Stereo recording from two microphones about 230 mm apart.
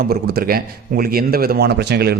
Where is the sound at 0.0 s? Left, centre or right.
Right.